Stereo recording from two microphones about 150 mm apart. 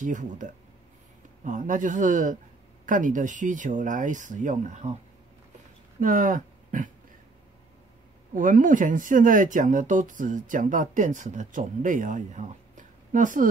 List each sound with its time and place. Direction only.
0.0 s speech: 60° right (ahead or behind)
5.9 s speech: 65° right (ahead or behind)
8.4 s speech: 60° right (ahead or behind)